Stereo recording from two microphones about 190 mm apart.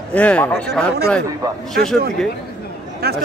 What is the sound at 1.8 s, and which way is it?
Speech, 55° right (ahead or behind).